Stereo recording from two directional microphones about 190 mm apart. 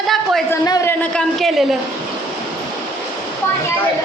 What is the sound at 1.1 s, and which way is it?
Speech, centre (ahead or behind).